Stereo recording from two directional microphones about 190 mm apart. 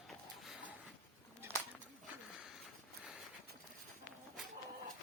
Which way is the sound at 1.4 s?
10° right (ahead or behind).